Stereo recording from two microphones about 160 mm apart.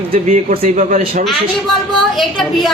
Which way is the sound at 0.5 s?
40° right (ahead or behind).